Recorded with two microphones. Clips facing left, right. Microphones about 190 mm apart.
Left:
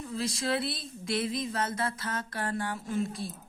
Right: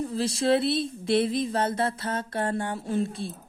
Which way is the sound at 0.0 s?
35° right (ahead or behind).